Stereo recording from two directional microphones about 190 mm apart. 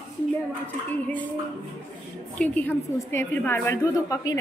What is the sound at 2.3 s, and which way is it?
A woman's voice, 10° left (ahead or behind).